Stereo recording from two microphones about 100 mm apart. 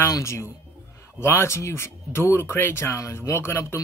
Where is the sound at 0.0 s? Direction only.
30° left (ahead or behind).